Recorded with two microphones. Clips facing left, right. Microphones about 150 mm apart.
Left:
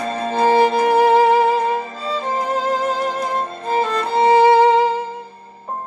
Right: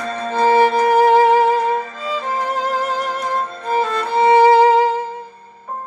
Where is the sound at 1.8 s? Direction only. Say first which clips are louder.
Even; 35° left (ahead or behind).